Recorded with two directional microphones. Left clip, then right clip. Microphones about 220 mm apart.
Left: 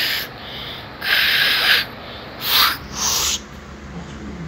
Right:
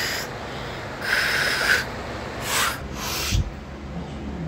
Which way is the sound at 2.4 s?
5° right (ahead or behind).